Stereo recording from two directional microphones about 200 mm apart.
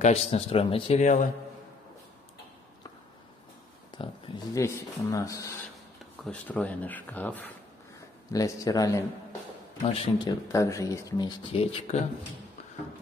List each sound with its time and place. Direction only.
0.0 s speech: 30° left (ahead or behind)
3.9 s a sound: 20° left (ahead or behind)
4.6 s speech: 15° left (ahead or behind)